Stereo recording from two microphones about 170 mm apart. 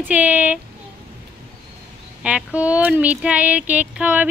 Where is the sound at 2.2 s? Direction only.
5° right (ahead or behind).